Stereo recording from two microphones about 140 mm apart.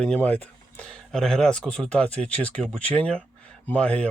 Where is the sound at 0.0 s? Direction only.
10° left (ahead or behind).